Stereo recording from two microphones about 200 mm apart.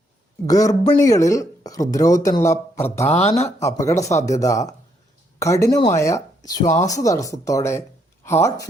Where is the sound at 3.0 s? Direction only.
30° left (ahead or behind).